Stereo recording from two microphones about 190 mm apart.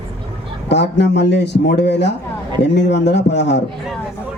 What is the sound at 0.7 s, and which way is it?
A man's voice, 65° left (ahead or behind).